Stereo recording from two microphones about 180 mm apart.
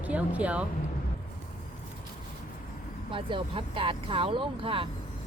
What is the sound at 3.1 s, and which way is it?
Speech, 30° right (ahead or behind).